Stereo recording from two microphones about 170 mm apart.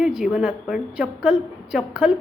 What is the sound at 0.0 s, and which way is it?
A woman's voice, 5° right (ahead or behind).